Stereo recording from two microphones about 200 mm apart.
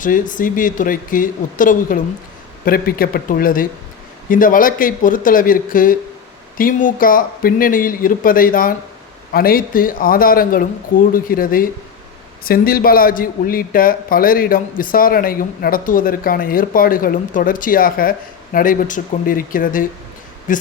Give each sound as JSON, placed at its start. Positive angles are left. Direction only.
{"t": 0.0, "sound": "a man's voice", "side_deg": 40}